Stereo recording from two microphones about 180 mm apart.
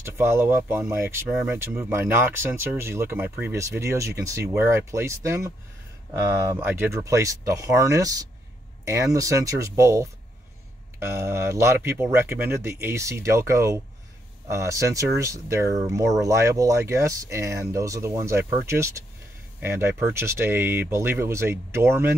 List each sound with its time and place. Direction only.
0.0 s speech: 15° right (ahead or behind)